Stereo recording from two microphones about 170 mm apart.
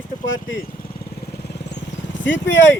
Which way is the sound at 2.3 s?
90° left.